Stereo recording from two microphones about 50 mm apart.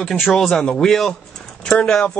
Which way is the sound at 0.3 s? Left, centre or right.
Centre.